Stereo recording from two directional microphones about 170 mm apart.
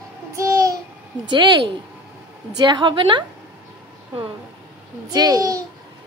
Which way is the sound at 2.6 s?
25° right (ahead or behind).